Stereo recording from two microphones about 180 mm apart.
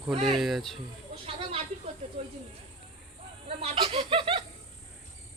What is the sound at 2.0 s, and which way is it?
Speech, 35° right (ahead or behind).